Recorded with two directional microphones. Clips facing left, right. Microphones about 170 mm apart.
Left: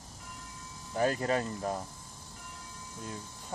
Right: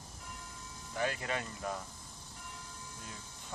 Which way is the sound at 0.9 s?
40° left (ahead or behind).